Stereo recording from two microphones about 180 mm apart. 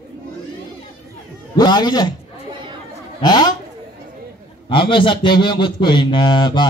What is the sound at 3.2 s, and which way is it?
Speech, 25° left (ahead or behind).